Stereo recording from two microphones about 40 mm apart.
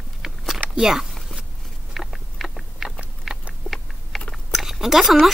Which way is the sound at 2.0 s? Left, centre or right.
Centre.